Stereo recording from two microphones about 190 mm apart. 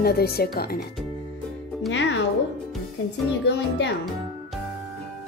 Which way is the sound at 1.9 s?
75° left (ahead or behind).